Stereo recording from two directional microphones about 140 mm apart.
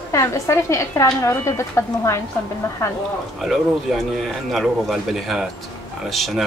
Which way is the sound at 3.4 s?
Centre (ahead or behind).